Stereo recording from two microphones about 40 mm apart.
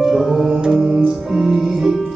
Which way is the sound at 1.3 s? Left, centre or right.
Centre.